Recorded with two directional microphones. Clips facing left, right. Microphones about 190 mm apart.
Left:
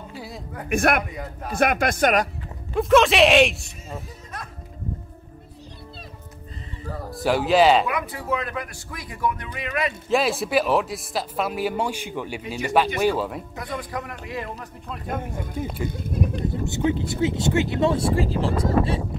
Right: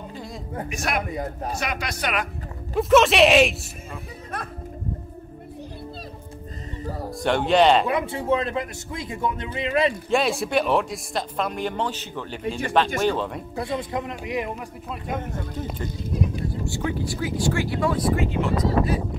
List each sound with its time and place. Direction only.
0.1 s music: 5° left (ahead or behind)
0.7 s speech: 55° left (ahead or behind)
2.7 s speech: centre (ahead or behind)
7.1 s speech: 5° left (ahead or behind)
7.8 s speech: 25° right (ahead or behind)
10.0 s speech: centre (ahead or behind)
13.6 s speech: 25° right (ahead or behind)
15.1 s speech: 10° left (ahead or behind)
16.4 s speech: 20° left (ahead or behind)